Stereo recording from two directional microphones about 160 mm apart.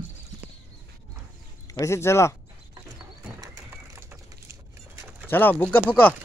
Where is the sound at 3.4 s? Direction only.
20° right (ahead or behind).